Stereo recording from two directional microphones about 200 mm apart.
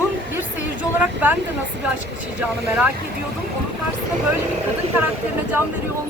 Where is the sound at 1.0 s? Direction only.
10° right (ahead or behind).